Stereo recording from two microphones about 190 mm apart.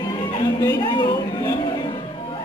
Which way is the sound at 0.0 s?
25° left (ahead or behind).